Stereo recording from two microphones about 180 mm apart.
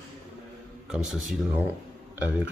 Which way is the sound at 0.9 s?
5° right (ahead or behind).